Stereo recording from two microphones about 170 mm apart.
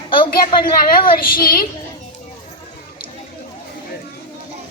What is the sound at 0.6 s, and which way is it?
A woman's voice, 55° left (ahead or behind).